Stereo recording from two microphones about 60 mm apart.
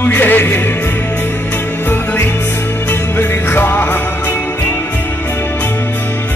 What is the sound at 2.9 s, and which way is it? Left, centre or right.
Music, left.